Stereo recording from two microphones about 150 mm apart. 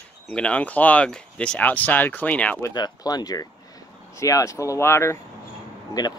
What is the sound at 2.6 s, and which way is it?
Speech, 25° left (ahead or behind).